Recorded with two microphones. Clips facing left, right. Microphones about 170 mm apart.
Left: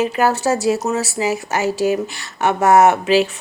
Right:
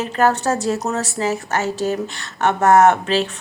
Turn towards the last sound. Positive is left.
turn(degrees=10)  # may be behind; listen again after turning